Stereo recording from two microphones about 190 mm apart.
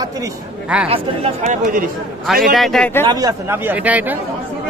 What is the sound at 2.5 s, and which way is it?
Speech, centre (ahead or behind).